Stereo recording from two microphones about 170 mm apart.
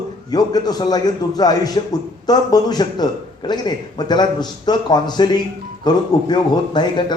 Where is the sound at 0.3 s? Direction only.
25° left (ahead or behind).